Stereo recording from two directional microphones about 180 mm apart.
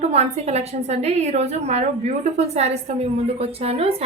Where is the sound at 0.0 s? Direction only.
35° right (ahead or behind).